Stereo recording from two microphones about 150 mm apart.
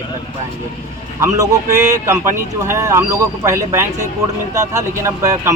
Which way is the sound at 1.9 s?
20° right (ahead or behind).